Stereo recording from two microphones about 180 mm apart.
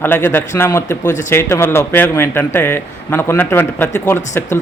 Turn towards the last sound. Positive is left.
turn(degrees=10)  # may be behind; listen again after turning